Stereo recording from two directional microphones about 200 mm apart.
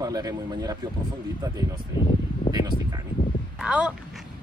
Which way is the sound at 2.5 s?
20° right (ahead or behind).